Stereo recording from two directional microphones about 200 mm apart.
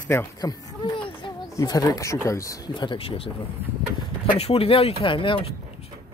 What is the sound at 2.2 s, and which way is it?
Speech, 15° left (ahead or behind).